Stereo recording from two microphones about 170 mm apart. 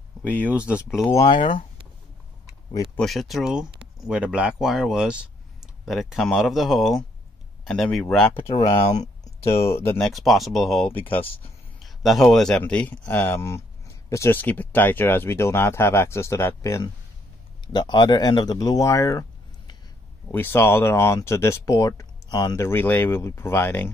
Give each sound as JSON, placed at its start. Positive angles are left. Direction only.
{"t": 0.4, "sound": "speech", "side_deg": -10}
{"t": 1.1, "sound": "speech", "side_deg": 25}
{"t": 3.0, "sound": "speech", "side_deg": 0}
{"t": 8.4, "sound": "speech", "side_deg": 35}
{"t": 9.9, "sound": "speech", "side_deg": 0}
{"t": 11.8, "sound": "speech", "side_deg": 0}
{"t": 20.2, "sound": "speech", "side_deg": 15}